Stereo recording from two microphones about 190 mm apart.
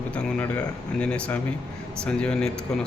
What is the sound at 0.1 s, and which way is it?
Speech, 5° left (ahead or behind).